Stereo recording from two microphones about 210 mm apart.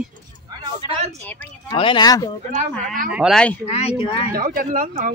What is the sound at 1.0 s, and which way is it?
Speech, 30° right (ahead or behind).